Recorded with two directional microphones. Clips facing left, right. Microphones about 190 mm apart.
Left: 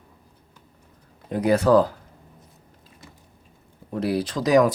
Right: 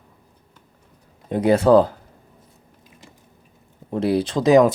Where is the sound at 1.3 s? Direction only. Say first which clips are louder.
Right 3 dB; 25° right (ahead or behind).